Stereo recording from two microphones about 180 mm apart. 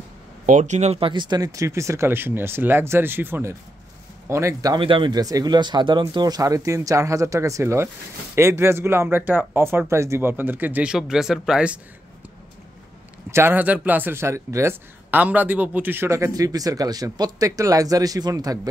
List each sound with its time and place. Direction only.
0.5 s speech: 45° right (ahead or behind); by 11.8 s 5° right (ahead or behind)
13.3 s speech: 10° right (ahead or behind)